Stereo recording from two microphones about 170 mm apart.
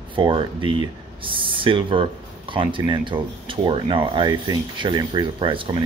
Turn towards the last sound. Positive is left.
turn(degrees=-30)  # may be behind; listen again after turning